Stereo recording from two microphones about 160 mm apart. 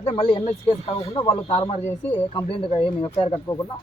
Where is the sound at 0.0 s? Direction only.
40° left (ahead or behind).